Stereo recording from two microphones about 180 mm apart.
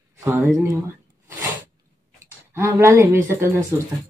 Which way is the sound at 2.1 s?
15° right (ahead or behind).